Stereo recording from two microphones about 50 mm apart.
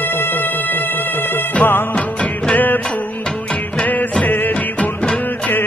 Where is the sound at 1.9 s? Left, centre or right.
Left.